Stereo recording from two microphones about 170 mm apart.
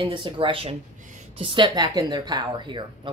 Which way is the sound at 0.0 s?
30° right (ahead or behind).